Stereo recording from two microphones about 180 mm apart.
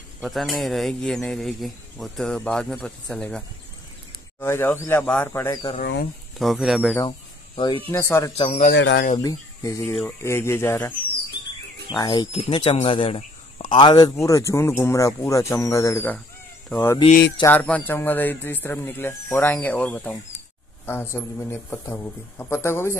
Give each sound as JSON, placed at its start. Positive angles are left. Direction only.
{"t": 0.2, "sound": "speech", "side_deg": 0}
{"t": 6.4, "sound": "speech", "side_deg": 0}
{"t": 7.1, "sound": "a sound", "side_deg": 30}
{"t": 7.9, "sound": "speech", "side_deg": 15}
{"t": 8.4, "sound": "speech", "side_deg": 35}
{"t": 8.6, "sound": "speech", "side_deg": 80}
{"t": 9.2, "sound": "speech", "side_deg": 20}
{"t": 11.9, "sound": "speech", "side_deg": 20}